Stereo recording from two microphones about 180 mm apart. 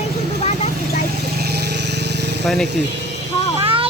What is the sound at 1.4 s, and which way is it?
Vehicle, 65° right (ahead or behind).